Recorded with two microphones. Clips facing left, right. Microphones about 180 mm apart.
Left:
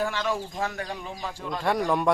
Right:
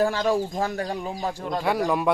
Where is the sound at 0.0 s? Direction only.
35° right (ahead or behind).